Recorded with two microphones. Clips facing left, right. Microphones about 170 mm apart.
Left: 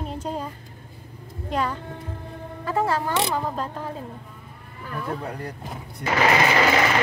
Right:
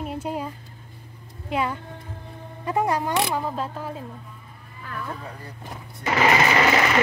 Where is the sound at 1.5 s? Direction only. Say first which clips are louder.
Even; 10° right (ahead or behind).